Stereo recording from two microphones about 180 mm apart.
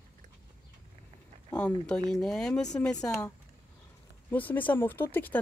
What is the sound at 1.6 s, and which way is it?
Speech, 5° left (ahead or behind).